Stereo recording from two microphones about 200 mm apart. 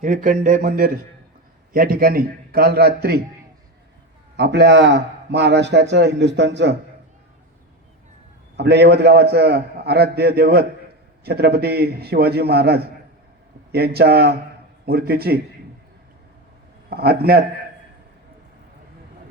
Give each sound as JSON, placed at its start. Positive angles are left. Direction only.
{"t": 0.0, "sound": "a man's voice", "side_deg": -40}
{"t": 4.4, "sound": "a man's voice", "side_deg": -60}
{"t": 8.5, "sound": "a man's voice", "side_deg": -55}
{"t": 16.9, "sound": "a man's voice", "side_deg": -50}